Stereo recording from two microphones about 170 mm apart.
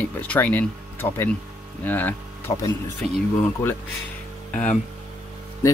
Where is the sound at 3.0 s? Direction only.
5° left (ahead or behind).